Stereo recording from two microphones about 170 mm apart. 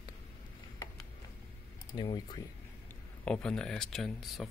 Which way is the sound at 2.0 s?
25° left (ahead or behind).